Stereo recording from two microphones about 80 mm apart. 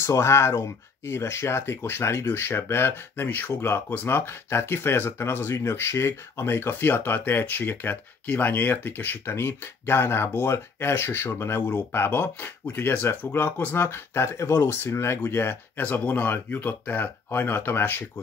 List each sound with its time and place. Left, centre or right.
0.0 s speech: left
15.8 s speech: left